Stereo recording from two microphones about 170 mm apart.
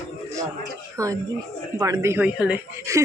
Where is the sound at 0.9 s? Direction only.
20° right (ahead or behind).